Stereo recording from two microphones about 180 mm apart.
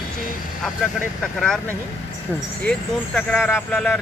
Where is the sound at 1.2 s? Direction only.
5° left (ahead or behind).